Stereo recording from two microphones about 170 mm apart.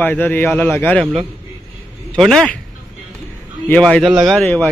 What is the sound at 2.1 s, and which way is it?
Speech, 5° left (ahead or behind).